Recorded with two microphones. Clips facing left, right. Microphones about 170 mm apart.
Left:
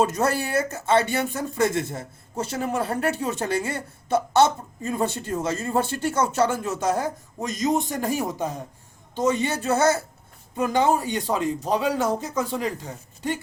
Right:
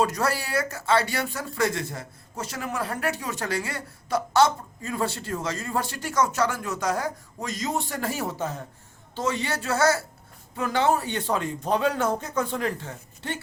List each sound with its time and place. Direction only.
0.0 s speech: 25° left (ahead or behind); by 12.7 s 10° left (ahead or behind)